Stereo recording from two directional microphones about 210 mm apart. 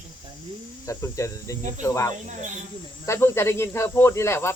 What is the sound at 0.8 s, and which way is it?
Speech, 15° left (ahead or behind).